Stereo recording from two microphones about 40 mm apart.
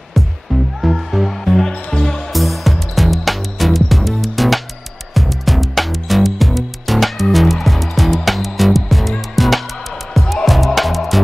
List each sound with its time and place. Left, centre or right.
0.7 s music: centre
2.3 s music: centre